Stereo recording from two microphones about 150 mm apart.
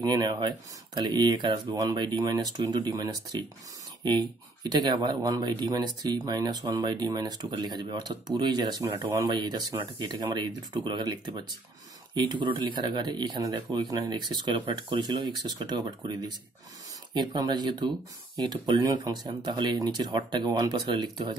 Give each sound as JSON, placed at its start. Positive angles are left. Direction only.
{"t": 0.0, "sound": "speech", "side_deg": -30}
{"t": 17.1, "sound": "speech", "side_deg": -30}